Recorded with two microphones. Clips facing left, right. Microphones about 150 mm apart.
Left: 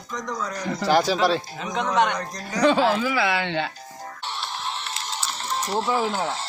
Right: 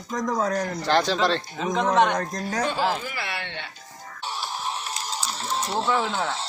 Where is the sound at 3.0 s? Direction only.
90° left.